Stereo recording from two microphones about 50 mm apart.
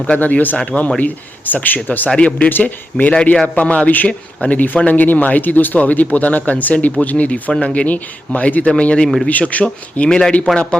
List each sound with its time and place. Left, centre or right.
0.1 s speech: left
0.9 s a man's voice: left
2.1 s speech: left
2.5 s a man's voice: left
10.0 s speech: centre